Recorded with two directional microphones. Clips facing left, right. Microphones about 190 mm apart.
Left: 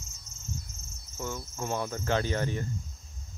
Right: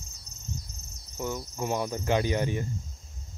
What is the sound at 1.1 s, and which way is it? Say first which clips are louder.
Cricket: right 4 dB; 15° right (ahead or behind).